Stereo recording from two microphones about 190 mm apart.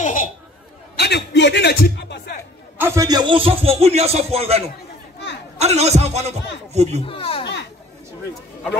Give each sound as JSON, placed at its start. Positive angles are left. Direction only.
{"t": 0.0, "sound": "chatter", "side_deg": 45}
{"t": 0.9, "sound": "a man's voice", "side_deg": 60}
{"t": 2.8, "sound": "speech", "side_deg": -15}
{"t": 7.1, "sound": "speech", "side_deg": 30}